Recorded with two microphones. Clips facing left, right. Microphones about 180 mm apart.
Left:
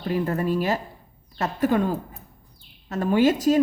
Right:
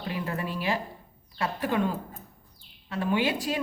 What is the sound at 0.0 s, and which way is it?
A woman's voice, 45° left (ahead or behind).